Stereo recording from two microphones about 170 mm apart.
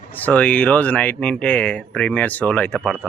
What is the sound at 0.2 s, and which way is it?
A man's voice, 10° left (ahead or behind).